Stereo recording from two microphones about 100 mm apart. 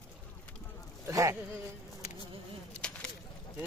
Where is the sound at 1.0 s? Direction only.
30° right (ahead or behind).